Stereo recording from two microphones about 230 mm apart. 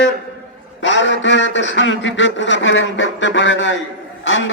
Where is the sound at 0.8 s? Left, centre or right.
Left.